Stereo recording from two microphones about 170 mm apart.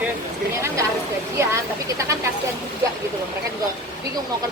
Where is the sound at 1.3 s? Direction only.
15° right (ahead or behind).